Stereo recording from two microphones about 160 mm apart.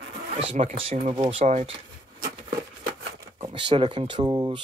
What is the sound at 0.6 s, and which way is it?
Speech, 40° right (ahead or behind).